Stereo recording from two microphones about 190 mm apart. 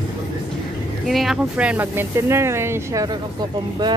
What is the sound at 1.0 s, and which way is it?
Speech, centre (ahead or behind).